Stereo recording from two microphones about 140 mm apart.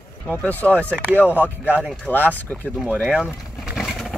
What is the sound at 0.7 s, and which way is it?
Speech, 15° right (ahead or behind).